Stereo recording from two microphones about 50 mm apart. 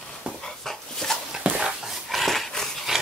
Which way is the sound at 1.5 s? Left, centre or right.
Right.